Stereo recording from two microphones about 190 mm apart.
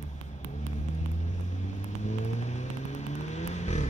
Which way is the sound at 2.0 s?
40° left (ahead or behind).